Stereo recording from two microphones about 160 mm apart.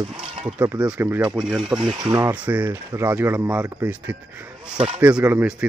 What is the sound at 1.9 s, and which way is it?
Speech, 30° right (ahead or behind).